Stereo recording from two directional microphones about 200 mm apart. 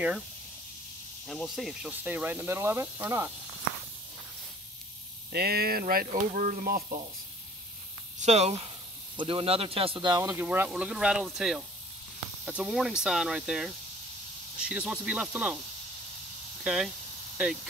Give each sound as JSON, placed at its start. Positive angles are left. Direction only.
{"t": 1.2, "sound": "speech", "side_deg": 0}
{"t": 5.3, "sound": "speech", "side_deg": -50}
{"t": 8.2, "sound": "speech", "side_deg": -35}
{"t": 16.6, "sound": "speech", "side_deg": -5}